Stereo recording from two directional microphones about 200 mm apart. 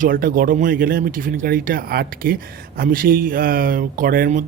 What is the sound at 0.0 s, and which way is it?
Speech, 45° right (ahead or behind).